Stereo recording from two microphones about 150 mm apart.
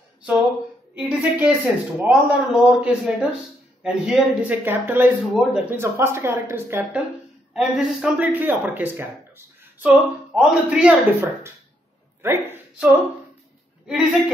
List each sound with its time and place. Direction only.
0.9 s a man's voice: 10° right (ahead or behind)
5.8 s a man's voice: 15° right (ahead or behind)
7.5 s a woman's voice: centre (ahead or behind)